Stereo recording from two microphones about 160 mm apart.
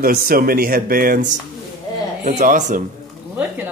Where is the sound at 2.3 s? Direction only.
50° right (ahead or behind).